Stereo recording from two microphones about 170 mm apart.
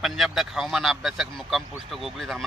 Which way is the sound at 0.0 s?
Centre (ahead or behind).